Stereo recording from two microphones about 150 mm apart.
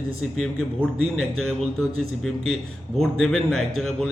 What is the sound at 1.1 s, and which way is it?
A man's voice, centre (ahead or behind).